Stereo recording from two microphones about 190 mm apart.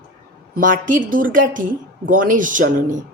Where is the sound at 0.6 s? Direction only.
45° right (ahead or behind).